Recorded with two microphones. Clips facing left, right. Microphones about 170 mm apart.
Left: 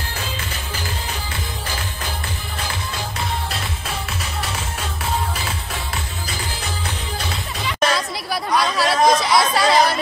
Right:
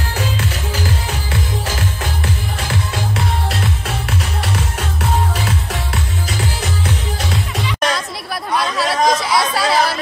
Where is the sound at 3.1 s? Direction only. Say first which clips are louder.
Right 4 dB; 80° right.